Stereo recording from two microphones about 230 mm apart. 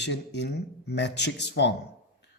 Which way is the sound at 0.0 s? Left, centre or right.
Left.